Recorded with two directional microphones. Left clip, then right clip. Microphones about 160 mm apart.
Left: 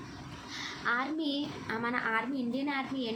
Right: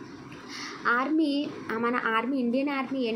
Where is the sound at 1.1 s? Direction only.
55° right (ahead or behind).